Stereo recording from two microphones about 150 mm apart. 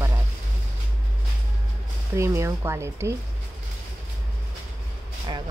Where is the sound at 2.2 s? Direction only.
20° right (ahead or behind).